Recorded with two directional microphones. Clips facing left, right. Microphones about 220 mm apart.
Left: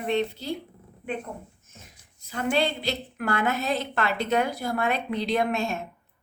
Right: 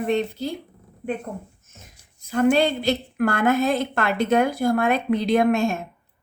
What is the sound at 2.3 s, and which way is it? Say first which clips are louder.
A woman's voice: right 7 dB; 45° right (ahead or behind).